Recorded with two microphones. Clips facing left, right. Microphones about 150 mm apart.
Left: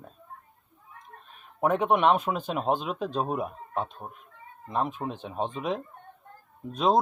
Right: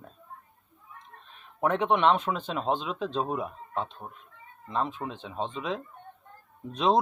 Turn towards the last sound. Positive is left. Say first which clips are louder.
# left 1 dB
turn(degrees=5)  # may be behind; listen again after turning